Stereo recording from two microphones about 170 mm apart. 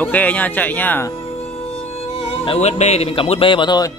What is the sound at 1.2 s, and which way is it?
Music, 35° left (ahead or behind).